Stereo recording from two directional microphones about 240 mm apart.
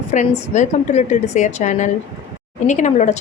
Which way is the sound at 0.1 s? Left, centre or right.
Left.